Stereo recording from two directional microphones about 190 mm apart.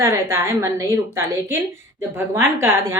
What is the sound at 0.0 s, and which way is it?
A woman's voice, 15° right (ahead or behind).